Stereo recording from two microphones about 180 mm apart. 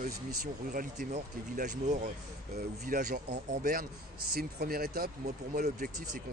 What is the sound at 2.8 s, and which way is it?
Speech, 55° right (ahead or behind).